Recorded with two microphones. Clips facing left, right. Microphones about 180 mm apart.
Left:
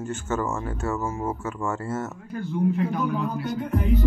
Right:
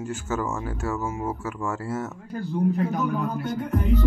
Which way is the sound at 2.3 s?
35° right (ahead or behind).